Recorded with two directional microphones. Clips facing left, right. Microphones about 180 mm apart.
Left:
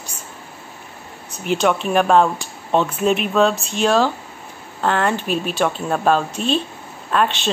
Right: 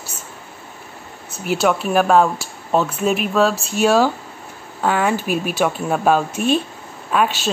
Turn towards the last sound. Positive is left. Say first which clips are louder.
# even
turn(degrees=-5)  # may be behind; listen again after turning